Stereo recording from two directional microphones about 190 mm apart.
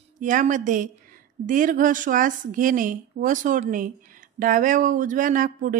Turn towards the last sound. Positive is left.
turn(degrees=-45)  # may be behind; listen again after turning